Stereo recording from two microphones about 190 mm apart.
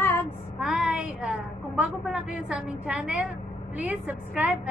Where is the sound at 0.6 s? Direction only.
5° right (ahead or behind).